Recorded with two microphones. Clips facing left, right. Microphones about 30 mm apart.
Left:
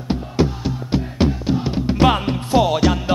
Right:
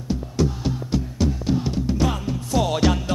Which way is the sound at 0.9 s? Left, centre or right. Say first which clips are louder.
Left 6 dB; left.